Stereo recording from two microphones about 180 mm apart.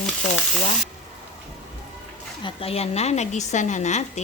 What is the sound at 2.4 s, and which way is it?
A woman's voice, 30° left (ahead or behind).